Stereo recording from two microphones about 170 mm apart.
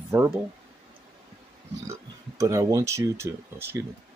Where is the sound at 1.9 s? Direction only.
20° right (ahead or behind).